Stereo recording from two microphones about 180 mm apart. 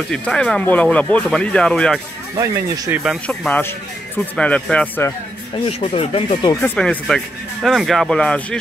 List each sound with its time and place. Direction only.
0.1 s speech: 5° left (ahead or behind)
2.3 s speech: 20° right (ahead or behind)
3.0 s speech: centre (ahead or behind)
5.7 s speech: 30° left (ahead or behind)
6.5 s speech: 10° left (ahead or behind)